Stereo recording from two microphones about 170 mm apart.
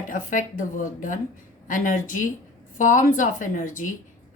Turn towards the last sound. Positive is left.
turn(degrees=50)  # may be behind; listen again after turning